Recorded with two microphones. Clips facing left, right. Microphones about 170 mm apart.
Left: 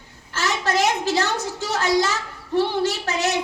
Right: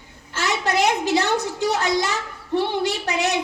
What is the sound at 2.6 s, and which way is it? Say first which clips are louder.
Speech: left 1 dB; 15° right (ahead or behind).